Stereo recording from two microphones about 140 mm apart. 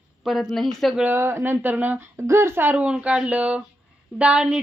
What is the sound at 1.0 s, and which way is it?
A woman's voice, 15° right (ahead or behind).